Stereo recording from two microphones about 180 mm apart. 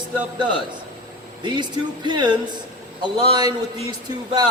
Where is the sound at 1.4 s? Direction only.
25° right (ahead or behind).